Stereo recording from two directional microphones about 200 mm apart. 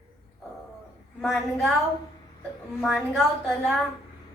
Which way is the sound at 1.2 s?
Centre (ahead or behind).